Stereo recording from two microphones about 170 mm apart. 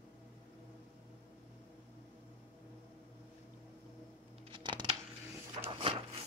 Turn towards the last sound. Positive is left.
turn(degrees=-30)  # may be behind; listen again after turning